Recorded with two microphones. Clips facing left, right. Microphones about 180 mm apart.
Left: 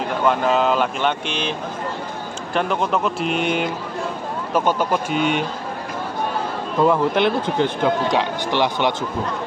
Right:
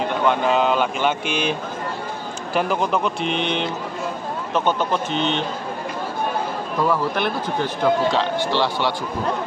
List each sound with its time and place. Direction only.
0.3 s a man's voice: centre (ahead or behind)
2.5 s a man's voice: centre (ahead or behind)
6.8 s speech: 20° left (ahead or behind)